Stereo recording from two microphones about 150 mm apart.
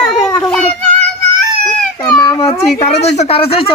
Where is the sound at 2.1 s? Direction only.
35° left (ahead or behind).